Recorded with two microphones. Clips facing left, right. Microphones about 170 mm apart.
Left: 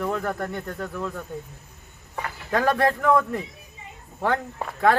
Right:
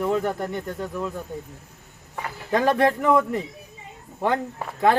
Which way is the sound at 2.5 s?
20° right (ahead or behind).